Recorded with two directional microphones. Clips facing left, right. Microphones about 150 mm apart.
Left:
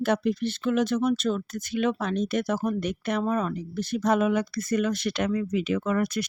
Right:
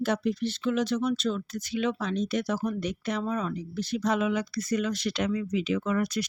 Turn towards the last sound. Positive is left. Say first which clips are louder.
# left 2 dB
turn(degrees=55)  # may be behind; listen again after turning